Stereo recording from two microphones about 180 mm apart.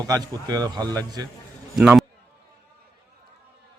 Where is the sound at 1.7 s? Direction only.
5° right (ahead or behind).